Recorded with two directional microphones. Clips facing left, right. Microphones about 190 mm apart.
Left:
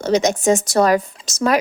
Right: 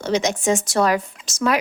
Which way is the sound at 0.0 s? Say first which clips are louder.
Left 4 dB; 40° left (ahead or behind).